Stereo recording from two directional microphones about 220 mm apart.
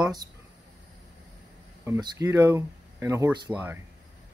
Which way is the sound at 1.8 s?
15° right (ahead or behind).